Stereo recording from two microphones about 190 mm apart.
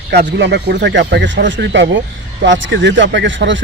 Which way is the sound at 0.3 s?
65° right (ahead or behind).